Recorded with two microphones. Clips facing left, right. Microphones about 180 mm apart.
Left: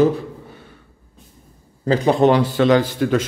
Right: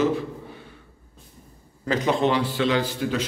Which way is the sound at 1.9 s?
40° left (ahead or behind).